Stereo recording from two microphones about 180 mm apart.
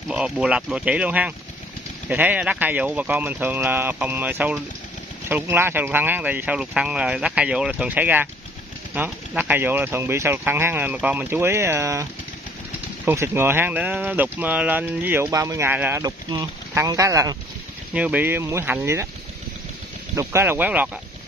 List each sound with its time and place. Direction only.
0.1 s speech: 5° right (ahead or behind)
20.2 s speech: 15° right (ahead or behind)